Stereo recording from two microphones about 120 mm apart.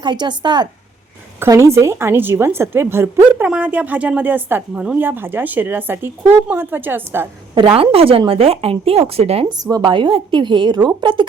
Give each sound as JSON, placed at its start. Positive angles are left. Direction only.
{"t": 0.0, "sound": "a woman's voice", "side_deg": -40}
{"t": 1.4, "sound": "a woman's voice", "side_deg": -25}
{"t": 7.5, "sound": "a woman's voice", "side_deg": -45}
{"t": 9.5, "sound": "a woman's voice", "side_deg": -35}